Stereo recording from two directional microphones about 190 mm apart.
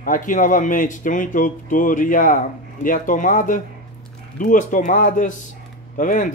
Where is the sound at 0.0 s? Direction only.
45° left (ahead or behind).